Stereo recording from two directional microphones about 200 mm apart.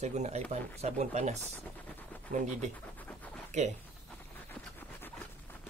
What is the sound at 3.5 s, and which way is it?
Speech, 35° right (ahead or behind).